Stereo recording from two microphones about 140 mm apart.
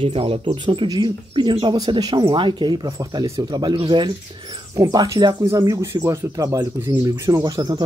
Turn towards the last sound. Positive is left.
turn(degrees=-30)  # may be behind; listen again after turning